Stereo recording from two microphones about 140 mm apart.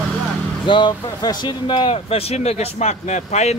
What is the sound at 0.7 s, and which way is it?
Speech, 35° left (ahead or behind).